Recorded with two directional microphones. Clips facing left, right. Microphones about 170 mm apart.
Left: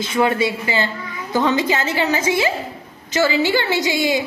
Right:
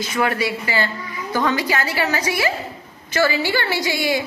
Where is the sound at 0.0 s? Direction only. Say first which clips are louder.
Left 3 dB; 25° left (ahead or behind).